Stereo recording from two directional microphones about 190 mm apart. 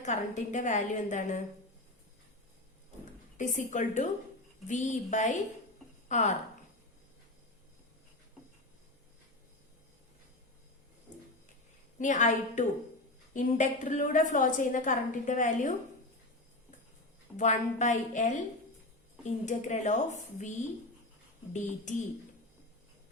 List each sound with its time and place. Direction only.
0.0 s a woman's voice: 40° left (ahead or behind)
3.3 s a woman's voice: 40° left (ahead or behind)
11.9 s a woman's voice: 40° left (ahead or behind)
17.3 s a woman's voice: 40° left (ahead or behind)